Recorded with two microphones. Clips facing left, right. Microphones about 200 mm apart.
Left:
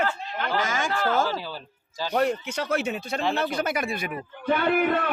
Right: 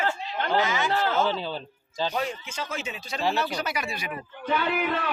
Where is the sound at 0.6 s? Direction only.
45° left (ahead or behind).